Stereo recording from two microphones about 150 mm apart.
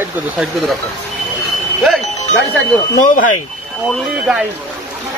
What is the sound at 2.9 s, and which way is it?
Speech, 60° left (ahead or behind).